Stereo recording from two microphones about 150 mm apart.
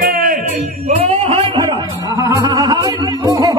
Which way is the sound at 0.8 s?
40° right (ahead or behind).